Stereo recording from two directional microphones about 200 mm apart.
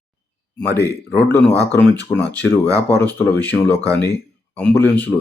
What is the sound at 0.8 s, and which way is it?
Speech, 10° left (ahead or behind).